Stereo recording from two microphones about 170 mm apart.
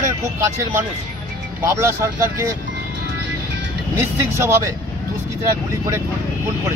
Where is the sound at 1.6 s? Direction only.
15° right (ahead or behind).